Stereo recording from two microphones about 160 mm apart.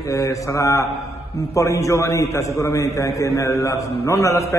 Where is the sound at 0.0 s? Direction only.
20° left (ahead or behind).